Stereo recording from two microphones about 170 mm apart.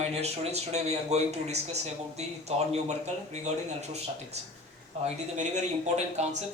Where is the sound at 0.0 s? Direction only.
40° right (ahead or behind).